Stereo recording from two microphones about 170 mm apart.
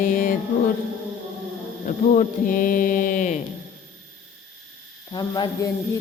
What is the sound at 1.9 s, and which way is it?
Mantra, 50° left (ahead or behind).